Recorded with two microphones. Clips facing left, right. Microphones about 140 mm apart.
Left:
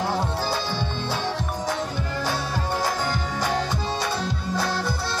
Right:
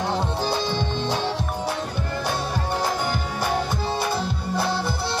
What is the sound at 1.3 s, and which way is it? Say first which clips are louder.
Music: right 1 dB; 10° right (ahead or behind).